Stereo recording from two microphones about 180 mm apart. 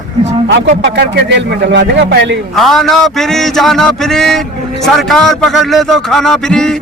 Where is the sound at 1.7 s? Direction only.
70° right (ahead or behind).